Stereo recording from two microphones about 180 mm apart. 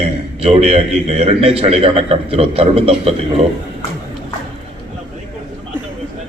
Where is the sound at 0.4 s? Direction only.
35° right (ahead or behind).